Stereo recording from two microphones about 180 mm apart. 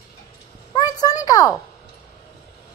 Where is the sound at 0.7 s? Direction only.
20° left (ahead or behind).